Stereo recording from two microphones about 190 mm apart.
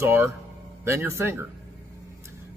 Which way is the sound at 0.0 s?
10° right (ahead or behind).